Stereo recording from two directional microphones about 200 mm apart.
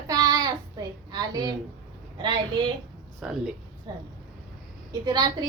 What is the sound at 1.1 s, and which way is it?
A woman's voice, 20° right (ahead or behind).